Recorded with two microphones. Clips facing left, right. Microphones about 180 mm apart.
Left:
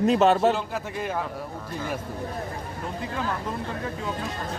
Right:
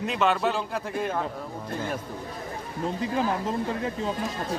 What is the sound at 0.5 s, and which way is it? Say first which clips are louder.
Speech: right 1 dB; centre (ahead or behind).